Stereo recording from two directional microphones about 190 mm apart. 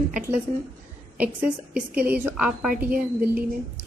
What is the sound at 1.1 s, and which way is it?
A woman's voice, 5° right (ahead or behind).